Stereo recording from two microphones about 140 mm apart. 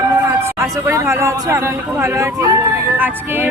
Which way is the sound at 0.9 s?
20° right (ahead or behind).